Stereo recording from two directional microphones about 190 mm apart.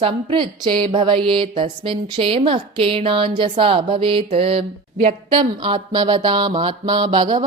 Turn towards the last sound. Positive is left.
turn(degrees=-25)  # may be behind; listen again after turning